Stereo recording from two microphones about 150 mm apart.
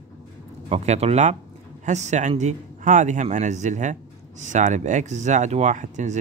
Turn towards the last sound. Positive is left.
turn(degrees=-55)  # may be behind; listen again after turning